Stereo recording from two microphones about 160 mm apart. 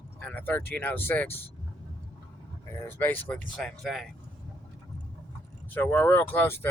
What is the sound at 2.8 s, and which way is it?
Speech, 10° left (ahead or behind).